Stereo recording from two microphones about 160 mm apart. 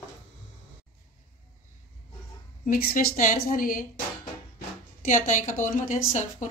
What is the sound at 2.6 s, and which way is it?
A woman's voice, 65° left (ahead or behind).